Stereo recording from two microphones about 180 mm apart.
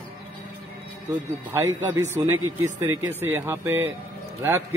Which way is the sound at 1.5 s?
15° right (ahead or behind).